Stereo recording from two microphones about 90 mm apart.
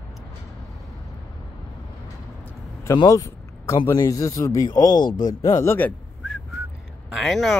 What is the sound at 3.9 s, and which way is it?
A man's voice, 35° left (ahead or behind).